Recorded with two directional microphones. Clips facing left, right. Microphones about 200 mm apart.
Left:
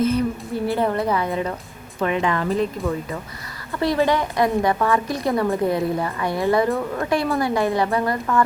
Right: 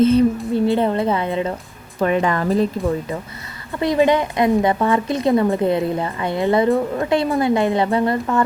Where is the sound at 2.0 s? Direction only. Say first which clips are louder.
Right 3 dB; 40° right (ahead or behind).